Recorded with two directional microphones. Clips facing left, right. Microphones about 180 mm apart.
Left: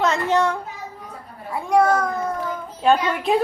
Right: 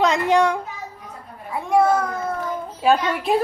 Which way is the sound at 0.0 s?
15° right (ahead or behind).